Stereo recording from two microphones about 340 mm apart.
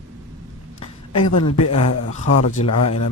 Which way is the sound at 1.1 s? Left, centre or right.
Left.